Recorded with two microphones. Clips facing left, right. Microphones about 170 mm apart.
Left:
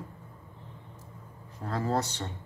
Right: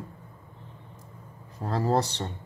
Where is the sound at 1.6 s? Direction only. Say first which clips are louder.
Right 4 dB; 35° right (ahead or behind).